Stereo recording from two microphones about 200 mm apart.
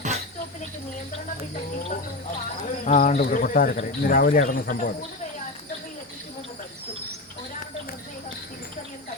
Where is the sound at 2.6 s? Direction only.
40° left (ahead or behind).